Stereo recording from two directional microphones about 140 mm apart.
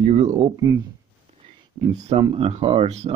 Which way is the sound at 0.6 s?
25° right (ahead or behind).